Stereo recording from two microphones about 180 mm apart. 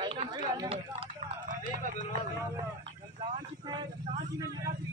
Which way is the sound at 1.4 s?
45° right (ahead or behind).